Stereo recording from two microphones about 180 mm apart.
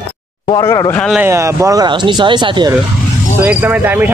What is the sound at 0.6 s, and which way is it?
Speech, 15° left (ahead or behind).